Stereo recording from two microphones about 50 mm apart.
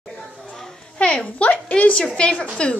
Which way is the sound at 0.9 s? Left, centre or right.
Left.